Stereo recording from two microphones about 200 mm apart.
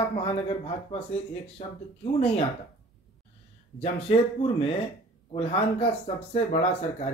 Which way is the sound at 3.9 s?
25° left (ahead or behind).